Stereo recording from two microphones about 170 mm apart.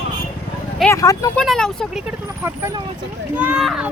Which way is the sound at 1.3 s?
5° left (ahead or behind).